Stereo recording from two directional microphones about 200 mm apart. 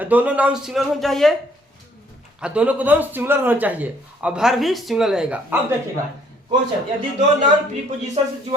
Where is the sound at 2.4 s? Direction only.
5° right (ahead or behind).